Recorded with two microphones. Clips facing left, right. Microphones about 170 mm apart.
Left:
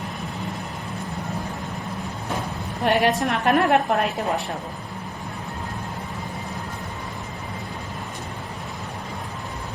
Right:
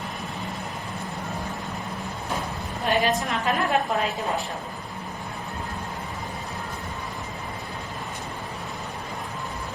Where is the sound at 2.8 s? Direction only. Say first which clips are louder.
Left 4 dB; 70° left (ahead or behind).